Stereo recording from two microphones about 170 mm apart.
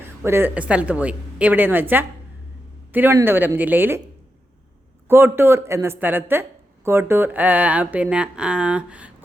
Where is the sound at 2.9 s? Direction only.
15° right (ahead or behind).